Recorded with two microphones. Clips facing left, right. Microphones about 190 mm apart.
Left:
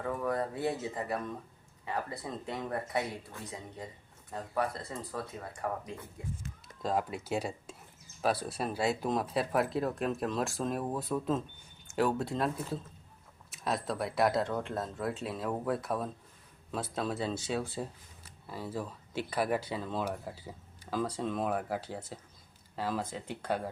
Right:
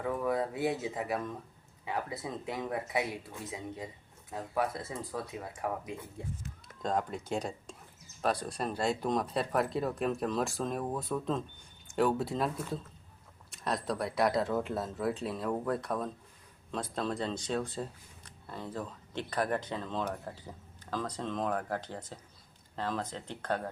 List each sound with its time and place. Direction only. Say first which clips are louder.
0.0 s speech: right 1 dB; 5° right (ahead or behind)
4.3 s speech: right 1 dB; 5° right (ahead or behind)
6.2 s speech: right 1 dB; 30° right (ahead or behind)
6.8 s speech: even; 5° left (ahead or behind)